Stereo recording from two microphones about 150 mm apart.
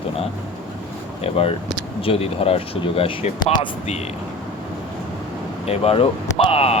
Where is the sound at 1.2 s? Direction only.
40° left (ahead or behind).